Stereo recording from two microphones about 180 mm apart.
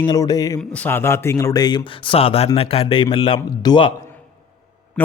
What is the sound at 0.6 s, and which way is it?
A man's voice, 10° left (ahead or behind).